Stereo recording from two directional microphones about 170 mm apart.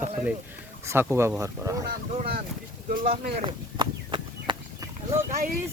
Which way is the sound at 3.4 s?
30° right (ahead or behind).